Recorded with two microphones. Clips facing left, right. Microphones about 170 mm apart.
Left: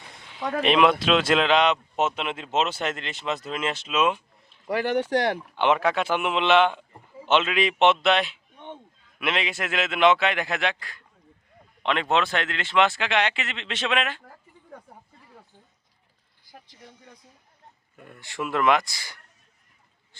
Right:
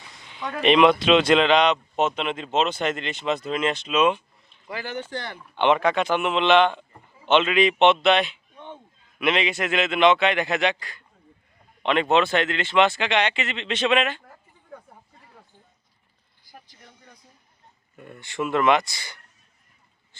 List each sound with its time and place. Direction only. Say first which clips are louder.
0.3 s speech: right 2 dB; 5° left (ahead or behind)
4.6 s speech: left 8 dB; 65° left (ahead or behind)
5.5 s speech: right 4 dB; 5° left (ahead or behind)
17.9 s speech: right 4 dB; centre (ahead or behind)